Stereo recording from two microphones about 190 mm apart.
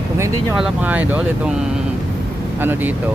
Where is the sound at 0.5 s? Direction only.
5° right (ahead or behind).